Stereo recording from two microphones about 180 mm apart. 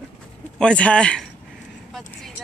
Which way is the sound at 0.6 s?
5° left (ahead or behind).